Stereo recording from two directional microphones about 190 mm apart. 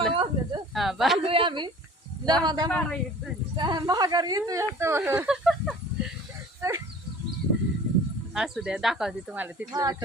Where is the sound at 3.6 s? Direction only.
20° right (ahead or behind).